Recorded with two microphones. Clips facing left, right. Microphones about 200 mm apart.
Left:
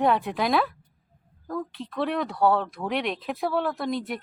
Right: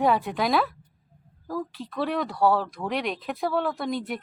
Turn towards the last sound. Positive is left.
turn(degrees=0)  # may be behind; listen again after turning